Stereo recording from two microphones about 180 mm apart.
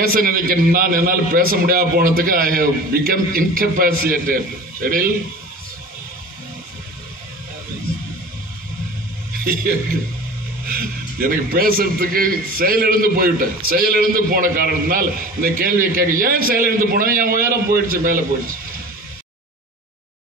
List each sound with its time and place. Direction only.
0.0 s a man's voice: 55° right (ahead or behind)
9.4 s a man's voice: 55° right (ahead or behind)